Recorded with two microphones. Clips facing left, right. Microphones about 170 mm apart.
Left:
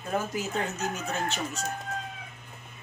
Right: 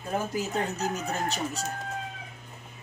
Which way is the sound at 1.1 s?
35° right (ahead or behind).